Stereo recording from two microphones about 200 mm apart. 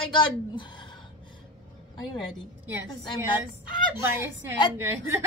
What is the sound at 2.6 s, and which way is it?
Speech, 10° right (ahead or behind).